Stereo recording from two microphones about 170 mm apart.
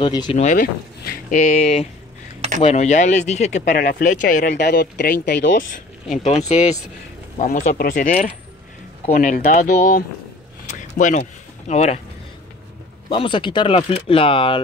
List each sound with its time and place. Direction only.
0.0 s speech: 25° left (ahead or behind)
0.4 s speech: 45° left (ahead or behind)
3.7 s speech: 55° left (ahead or behind)
4.6 s speech: 75° left (ahead or behind)
6.0 s speech: 45° left (ahead or behind)
10.7 s a sound: 45° left (ahead or behind)
13.1 s speech: 30° left (ahead or behind)